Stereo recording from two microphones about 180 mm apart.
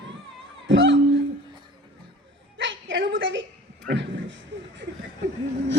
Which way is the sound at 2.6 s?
90° right.